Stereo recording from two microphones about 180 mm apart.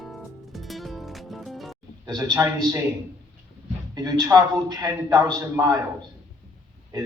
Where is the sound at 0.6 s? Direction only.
Centre (ahead or behind).